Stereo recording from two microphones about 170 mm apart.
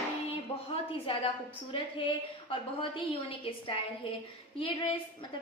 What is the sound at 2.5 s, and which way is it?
A woman's voice, 30° left (ahead or behind).